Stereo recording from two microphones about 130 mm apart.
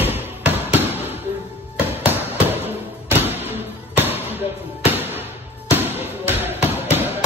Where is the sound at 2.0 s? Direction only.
15° right (ahead or behind).